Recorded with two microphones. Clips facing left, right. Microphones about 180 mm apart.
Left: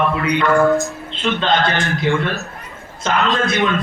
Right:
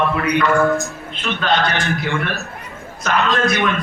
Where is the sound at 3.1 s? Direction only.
25° left (ahead or behind).